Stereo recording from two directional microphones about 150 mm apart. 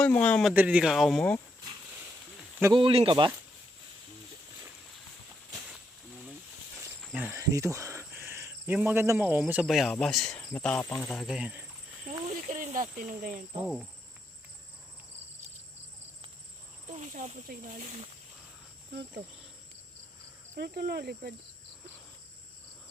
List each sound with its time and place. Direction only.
0.0 s speech: 10° left (ahead or behind)
0.5 s speech: 10° right (ahead or behind)
2.7 s speech: 35° right (ahead or behind)
7.3 s cricket: 20° right (ahead or behind)
8.7 s a man's voice: 10° right (ahead or behind)
9.6 s speech: centre (ahead or behind)
11.3 s a man's voice: 5° right (ahead or behind)
12.2 s cricket: 50° right (ahead or behind)
16.9 s speech: 55° right (ahead or behind)
17.8 s speech: 45° right (ahead or behind)
20.6 s speech: 90° right